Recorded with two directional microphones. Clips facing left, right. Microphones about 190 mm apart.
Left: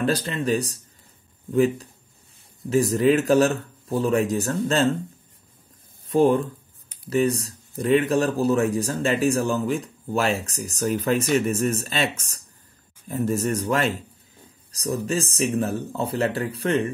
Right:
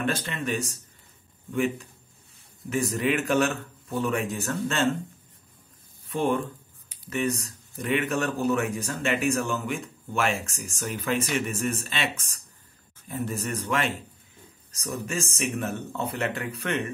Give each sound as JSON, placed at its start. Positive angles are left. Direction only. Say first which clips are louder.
{"t": 0.0, "sound": "speech", "louder": "left 5 dB", "side_deg": 35}
{"t": 6.0, "sound": "speech", "louder": "left 7 dB", "side_deg": 35}